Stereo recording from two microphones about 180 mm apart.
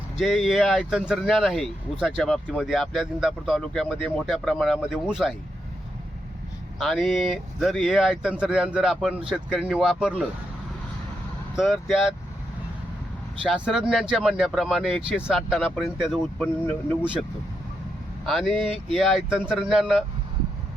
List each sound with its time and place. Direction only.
0.2 s speech: centre (ahead or behind)
6.7 s speech: centre (ahead or behind)
11.5 s speech: centre (ahead or behind)
13.4 s speech: centre (ahead or behind)
18.3 s speech: centre (ahead or behind)